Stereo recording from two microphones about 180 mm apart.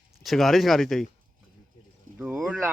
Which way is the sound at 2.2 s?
5° right (ahead or behind).